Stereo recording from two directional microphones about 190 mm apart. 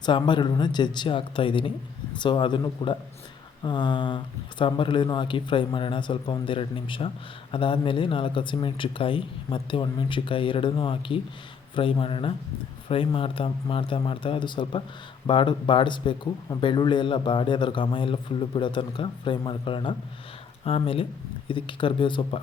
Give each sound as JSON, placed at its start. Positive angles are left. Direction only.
{"t": 0.0, "sound": "a man's voice", "side_deg": 25}